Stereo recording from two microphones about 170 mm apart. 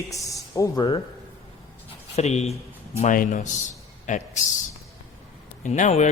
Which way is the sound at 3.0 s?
50° left (ahead or behind).